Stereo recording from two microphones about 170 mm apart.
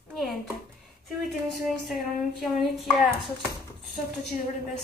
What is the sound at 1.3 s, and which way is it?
Speech, centre (ahead or behind).